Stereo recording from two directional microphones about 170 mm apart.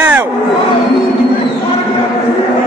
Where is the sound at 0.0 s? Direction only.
20° right (ahead or behind).